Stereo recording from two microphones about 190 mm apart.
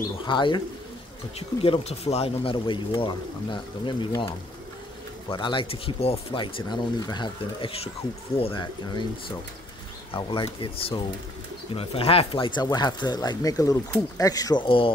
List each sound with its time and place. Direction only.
0.2 s speech: 25° left (ahead or behind)
1.6 s speech: 30° left (ahead or behind)
10.1 s speech: 25° left (ahead or behind)